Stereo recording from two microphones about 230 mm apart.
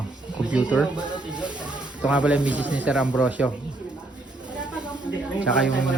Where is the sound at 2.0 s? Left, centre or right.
Centre.